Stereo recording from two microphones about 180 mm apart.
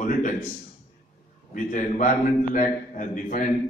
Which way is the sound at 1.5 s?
45° left (ahead or behind).